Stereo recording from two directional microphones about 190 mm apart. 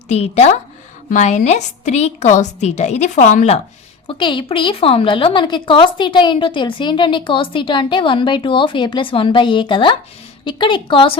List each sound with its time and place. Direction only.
0.1 s a woman's voice: 35° left (ahead or behind)
4.0 s a woman's voice: 25° left (ahead or behind)